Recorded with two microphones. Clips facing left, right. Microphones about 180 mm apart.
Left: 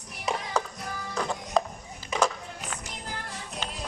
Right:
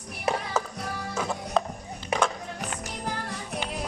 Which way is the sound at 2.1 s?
60° right (ahead or behind).